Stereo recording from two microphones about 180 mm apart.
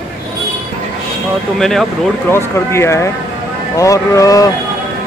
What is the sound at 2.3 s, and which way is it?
Speech, 15° left (ahead or behind).